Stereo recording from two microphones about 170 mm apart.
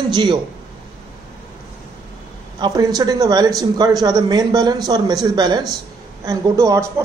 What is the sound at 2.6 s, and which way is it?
Speech, 25° right (ahead or behind).